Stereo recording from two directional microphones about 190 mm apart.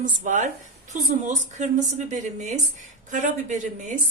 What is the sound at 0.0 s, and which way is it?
Speech, 40° right (ahead or behind).